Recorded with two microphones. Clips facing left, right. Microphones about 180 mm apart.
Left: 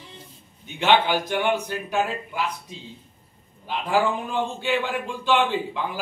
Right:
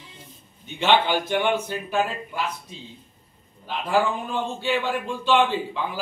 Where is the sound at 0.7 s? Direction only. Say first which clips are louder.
Even; 10° left (ahead or behind).